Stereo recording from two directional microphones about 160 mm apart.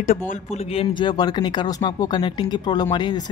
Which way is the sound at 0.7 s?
35° left (ahead or behind).